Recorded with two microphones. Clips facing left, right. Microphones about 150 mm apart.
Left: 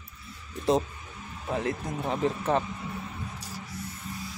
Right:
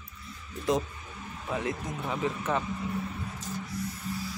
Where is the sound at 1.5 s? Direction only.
35° left (ahead or behind).